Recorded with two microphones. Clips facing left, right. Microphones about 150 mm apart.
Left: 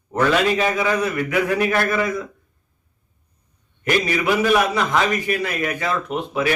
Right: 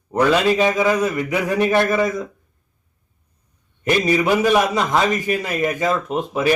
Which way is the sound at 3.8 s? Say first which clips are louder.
Right 3 dB; 25° right (ahead or behind).